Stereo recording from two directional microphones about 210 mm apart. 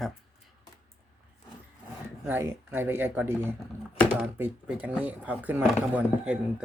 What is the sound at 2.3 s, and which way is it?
Speech, 10° right (ahead or behind).